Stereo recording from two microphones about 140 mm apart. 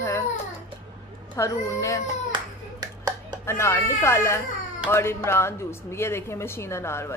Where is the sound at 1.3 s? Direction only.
20° left (ahead or behind).